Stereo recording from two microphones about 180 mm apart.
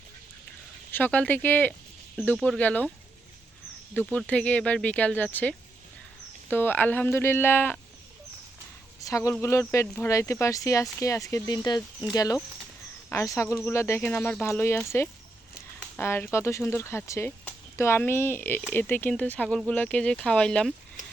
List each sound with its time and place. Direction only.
0.9 s speech: 10° left (ahead or behind)
4.3 s speech: 5° left (ahead or behind)
9.0 s speech: 20° left (ahead or behind)